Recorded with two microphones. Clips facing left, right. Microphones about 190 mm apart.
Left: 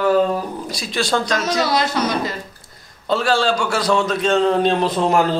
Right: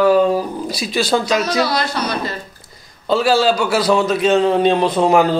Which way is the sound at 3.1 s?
5° right (ahead or behind).